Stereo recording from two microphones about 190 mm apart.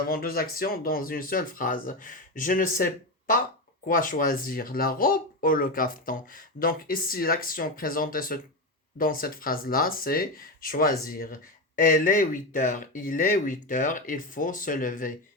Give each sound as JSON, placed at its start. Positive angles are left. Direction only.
{"t": 0.1, "sound": "speech", "side_deg": 50}